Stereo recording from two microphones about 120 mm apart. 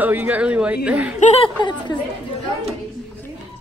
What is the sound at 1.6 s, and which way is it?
Speech, 40° left (ahead or behind).